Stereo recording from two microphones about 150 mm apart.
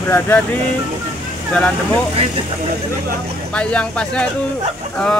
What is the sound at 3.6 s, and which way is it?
Speech, 5° left (ahead or behind).